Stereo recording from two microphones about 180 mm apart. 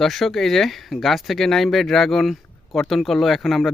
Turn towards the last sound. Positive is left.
turn(degrees=0)  # may be behind; listen again after turning